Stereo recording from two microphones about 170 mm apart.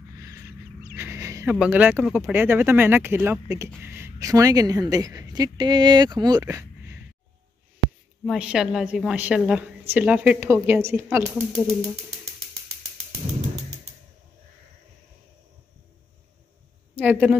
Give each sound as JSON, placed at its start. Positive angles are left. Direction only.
{"t": 0.1, "sound": "a sound", "side_deg": -20}
{"t": 0.9, "sound": "a woman's voice", "side_deg": -15}
{"t": 8.3, "sound": "a woman's voice", "side_deg": -5}
{"t": 16.9, "sound": "speech", "side_deg": -10}